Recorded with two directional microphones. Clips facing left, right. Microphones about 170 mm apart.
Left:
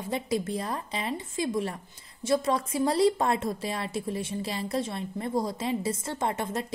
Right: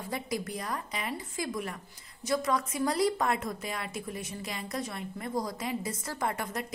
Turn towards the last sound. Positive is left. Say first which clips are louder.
# left 3 dB
turn(degrees=25)  # may be behind; listen again after turning